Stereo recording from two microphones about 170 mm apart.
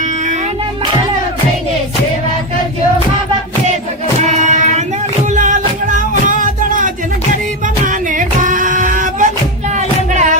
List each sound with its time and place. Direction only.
4.2 s music: 45° right (ahead or behind)